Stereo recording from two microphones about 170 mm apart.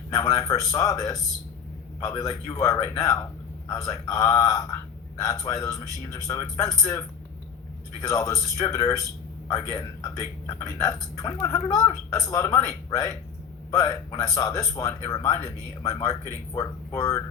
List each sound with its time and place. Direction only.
0.1 s a man's voice: 20° left (ahead or behind)
8.0 s a man's voice: 20° left (ahead or behind)
15.9 s speech: 40° left (ahead or behind)
16.6 s a man's voice: 20° left (ahead or behind)